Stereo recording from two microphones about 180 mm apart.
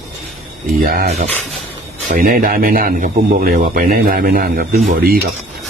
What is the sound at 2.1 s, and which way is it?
A man's voice, 50° right (ahead or behind).